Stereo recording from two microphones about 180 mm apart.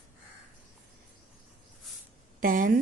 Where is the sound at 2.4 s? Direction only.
50° right (ahead or behind).